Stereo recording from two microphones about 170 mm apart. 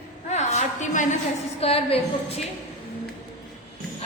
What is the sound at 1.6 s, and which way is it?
Speech, 35° left (ahead or behind).